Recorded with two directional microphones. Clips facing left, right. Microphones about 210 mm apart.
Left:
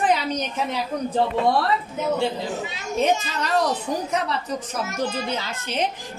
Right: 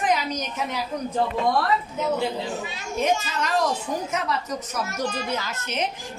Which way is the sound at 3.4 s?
35° left (ahead or behind).